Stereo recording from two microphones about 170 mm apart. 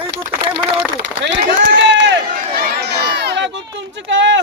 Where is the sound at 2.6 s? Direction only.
75° right (ahead or behind); by 4.4 s 90° right.